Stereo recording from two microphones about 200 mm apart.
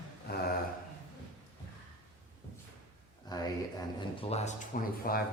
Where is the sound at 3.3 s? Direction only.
20° left (ahead or behind).